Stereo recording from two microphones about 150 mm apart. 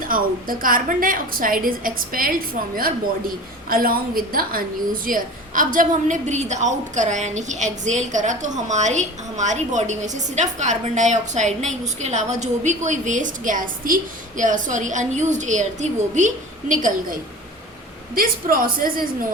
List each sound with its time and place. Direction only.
0.0 s a woman's voice: 70° right (ahead or behind)
3.7 s a woman's voice: 75° right (ahead or behind); by 17.2 s 60° right (ahead or behind)
18.1 s a woman's voice: 70° right (ahead or behind)